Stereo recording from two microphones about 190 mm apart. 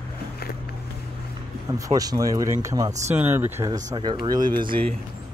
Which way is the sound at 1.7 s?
20° right (ahead or behind).